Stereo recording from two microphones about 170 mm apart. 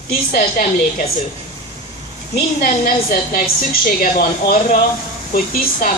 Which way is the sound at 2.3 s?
60° left (ahead or behind).